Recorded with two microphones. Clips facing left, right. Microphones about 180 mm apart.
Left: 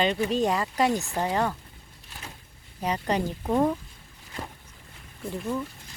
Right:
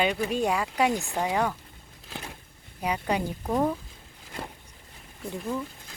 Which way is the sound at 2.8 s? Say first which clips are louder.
Left 1 dB; 10° right (ahead or behind).